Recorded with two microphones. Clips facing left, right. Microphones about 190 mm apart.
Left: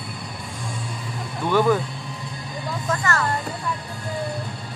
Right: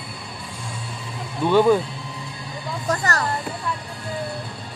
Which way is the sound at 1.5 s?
20° right (ahead or behind).